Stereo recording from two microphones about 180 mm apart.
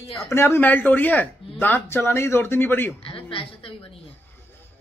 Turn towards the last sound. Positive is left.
turn(degrees=30)  # may be behind; listen again after turning